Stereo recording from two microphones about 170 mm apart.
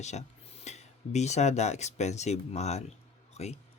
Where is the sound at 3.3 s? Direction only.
40° left (ahead or behind).